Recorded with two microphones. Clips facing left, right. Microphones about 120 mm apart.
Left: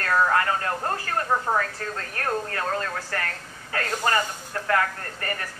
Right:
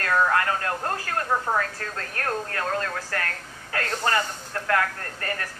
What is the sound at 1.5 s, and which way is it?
Speech, 10° left (ahead or behind).